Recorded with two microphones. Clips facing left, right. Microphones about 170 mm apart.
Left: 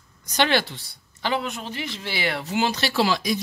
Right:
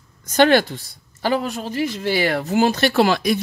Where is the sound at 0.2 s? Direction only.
50° right (ahead or behind).